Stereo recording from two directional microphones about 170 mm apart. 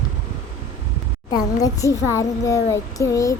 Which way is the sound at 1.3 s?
20° left (ahead or behind).